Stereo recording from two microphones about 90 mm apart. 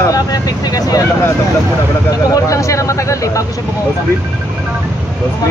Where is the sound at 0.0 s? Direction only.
45° left (ahead or behind).